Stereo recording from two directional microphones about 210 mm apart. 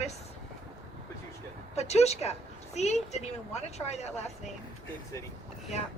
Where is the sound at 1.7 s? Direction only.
30° left (ahead or behind).